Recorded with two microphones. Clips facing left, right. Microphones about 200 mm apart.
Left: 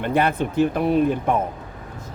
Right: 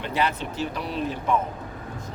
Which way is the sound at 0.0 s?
55° left (ahead or behind).